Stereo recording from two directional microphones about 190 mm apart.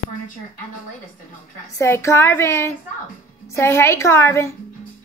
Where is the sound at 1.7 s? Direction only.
15° left (ahead or behind).